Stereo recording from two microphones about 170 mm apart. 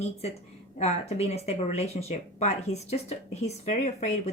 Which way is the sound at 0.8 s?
40° left (ahead or behind).